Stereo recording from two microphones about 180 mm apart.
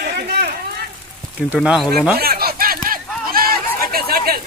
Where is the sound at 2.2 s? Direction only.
60° right (ahead or behind).